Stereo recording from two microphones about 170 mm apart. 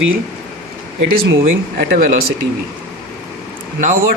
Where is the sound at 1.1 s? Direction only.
60° right (ahead or behind).